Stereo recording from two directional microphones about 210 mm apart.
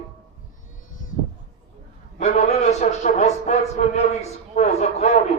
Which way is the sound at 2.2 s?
30° left (ahead or behind).